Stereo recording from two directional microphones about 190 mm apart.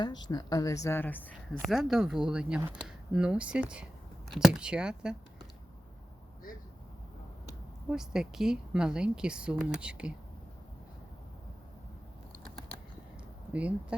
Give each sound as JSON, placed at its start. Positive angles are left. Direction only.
{"t": 0.0, "sound": "a woman's voice", "side_deg": 20}
{"t": 1.6, "sound": "speech", "side_deg": 0}
{"t": 7.9, "sound": "speech", "side_deg": -5}
{"t": 13.5, "sound": "speech", "side_deg": -5}